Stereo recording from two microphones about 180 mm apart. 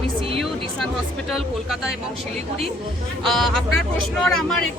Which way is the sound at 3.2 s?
Centre (ahead or behind).